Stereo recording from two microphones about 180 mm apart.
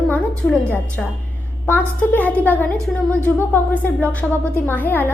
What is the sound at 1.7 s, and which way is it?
Speech, 10° left (ahead or behind).